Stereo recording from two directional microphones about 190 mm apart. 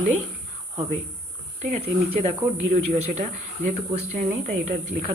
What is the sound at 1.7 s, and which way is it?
Speech, 35° right (ahead or behind).